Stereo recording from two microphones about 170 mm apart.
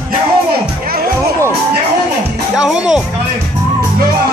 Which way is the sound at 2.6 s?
5° right (ahead or behind).